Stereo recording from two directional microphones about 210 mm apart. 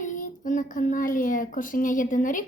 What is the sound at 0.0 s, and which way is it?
Speech, 35° left (ahead or behind).